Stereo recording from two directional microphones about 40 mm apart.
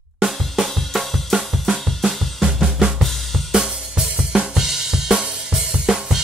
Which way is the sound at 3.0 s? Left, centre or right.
Centre.